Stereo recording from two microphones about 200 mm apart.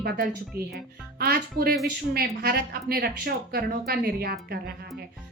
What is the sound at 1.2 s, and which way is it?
A woman's voice, 50° right (ahead or behind).